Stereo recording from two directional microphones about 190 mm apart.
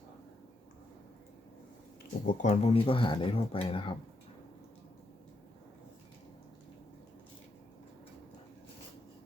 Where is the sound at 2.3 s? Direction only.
35° left (ahead or behind).